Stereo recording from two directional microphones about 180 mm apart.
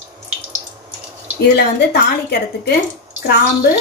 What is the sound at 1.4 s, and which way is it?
A woman's voice, 65° left (ahead or behind).